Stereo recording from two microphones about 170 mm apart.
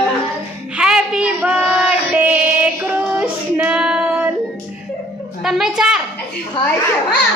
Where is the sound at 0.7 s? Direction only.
5° right (ahead or behind).